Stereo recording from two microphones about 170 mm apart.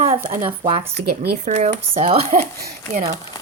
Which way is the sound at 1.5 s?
40° right (ahead or behind).